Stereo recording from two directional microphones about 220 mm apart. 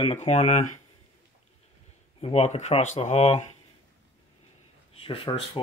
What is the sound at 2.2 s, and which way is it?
Speech, 30° left (ahead or behind).